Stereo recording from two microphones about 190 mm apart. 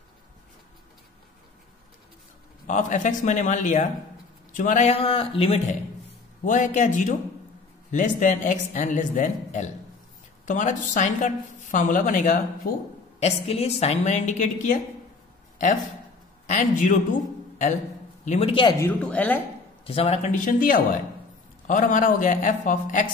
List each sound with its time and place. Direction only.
2.6 s a woman's voice: 40° left (ahead or behind)
6.4 s a woman's voice: 40° left (ahead or behind)
13.2 s a woman's voice: 30° left (ahead or behind)
16.4 s a man's voice: 45° left (ahead or behind); by 18.8 s 25° left (ahead or behind)
18.8 s a woman's voice: 10° left (ahead or behind)
19.8 s a woman's voice: 30° left (ahead or behind)